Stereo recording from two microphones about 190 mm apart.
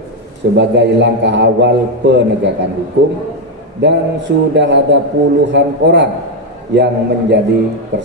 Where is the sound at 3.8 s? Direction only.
65° right (ahead or behind).